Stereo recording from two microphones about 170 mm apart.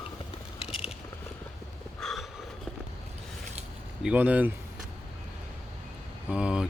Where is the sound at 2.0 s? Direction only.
Centre (ahead or behind).